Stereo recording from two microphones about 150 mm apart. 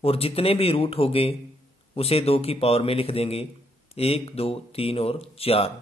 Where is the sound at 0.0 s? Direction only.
40° left (ahead or behind).